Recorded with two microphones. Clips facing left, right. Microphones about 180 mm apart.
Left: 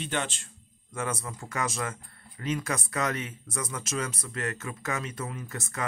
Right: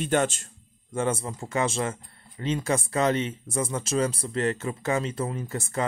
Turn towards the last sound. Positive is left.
turn(degrees=-30)  # may be behind; listen again after turning